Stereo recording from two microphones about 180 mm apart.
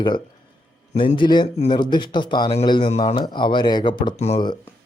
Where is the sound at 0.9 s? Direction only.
40° left (ahead or behind).